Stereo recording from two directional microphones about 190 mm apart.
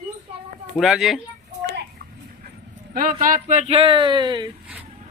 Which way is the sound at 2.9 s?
45° right (ahead or behind).